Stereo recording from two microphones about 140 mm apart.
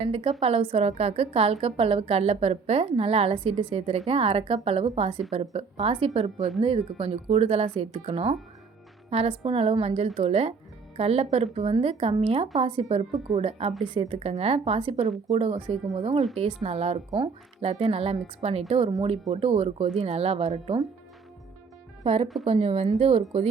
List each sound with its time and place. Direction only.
0.0 s a woman's voice: 45° right (ahead or behind)
22.0 s a woman's voice: 45° right (ahead or behind)